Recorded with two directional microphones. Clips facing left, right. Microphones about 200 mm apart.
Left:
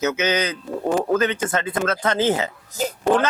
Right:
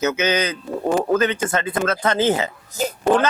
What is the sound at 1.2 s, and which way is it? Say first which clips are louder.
A man's voice: right 1 dB; 10° right (ahead or behind).